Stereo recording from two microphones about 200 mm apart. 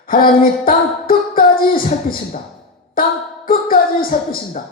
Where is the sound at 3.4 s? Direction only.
45° left (ahead or behind).